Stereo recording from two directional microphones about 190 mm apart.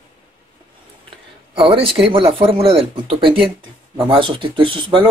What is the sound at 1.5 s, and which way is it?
Speech, 30° right (ahead or behind).